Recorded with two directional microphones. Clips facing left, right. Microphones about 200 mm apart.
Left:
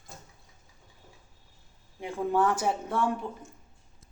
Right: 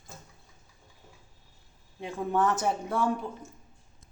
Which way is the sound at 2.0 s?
10° left (ahead or behind).